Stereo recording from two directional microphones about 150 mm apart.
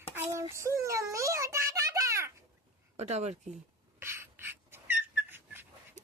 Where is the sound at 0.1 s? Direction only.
15° right (ahead or behind).